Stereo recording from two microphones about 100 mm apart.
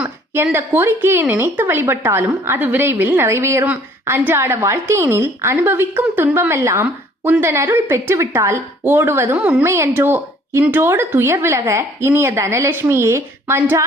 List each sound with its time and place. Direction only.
0.5 s speech: 25° right (ahead or behind)
9.4 s a woman's voice: 15° right (ahead or behind)
9.6 s speech: 25° right (ahead or behind)